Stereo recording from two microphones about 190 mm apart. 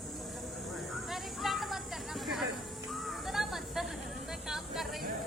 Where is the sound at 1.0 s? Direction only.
Centre (ahead or behind).